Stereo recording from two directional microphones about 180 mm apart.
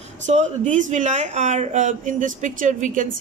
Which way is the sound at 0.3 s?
40° right (ahead or behind).